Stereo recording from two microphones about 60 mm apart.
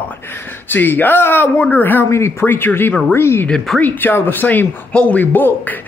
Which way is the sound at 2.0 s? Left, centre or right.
Left.